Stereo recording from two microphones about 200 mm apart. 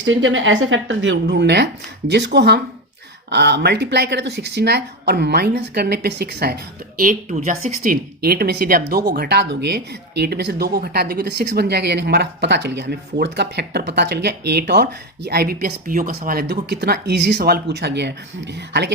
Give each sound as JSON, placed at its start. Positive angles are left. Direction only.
{"t": 0.0, "sound": "speech", "side_deg": -75}
{"t": 7.0, "sound": "speech", "side_deg": -40}
{"t": 7.8, "sound": "speech", "side_deg": -50}